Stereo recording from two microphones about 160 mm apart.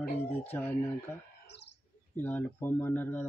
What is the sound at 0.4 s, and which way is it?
Speech, 10° left (ahead or behind).